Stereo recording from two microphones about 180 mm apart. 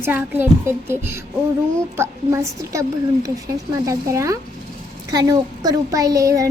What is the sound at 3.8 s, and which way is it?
Child singing, 20° right (ahead or behind).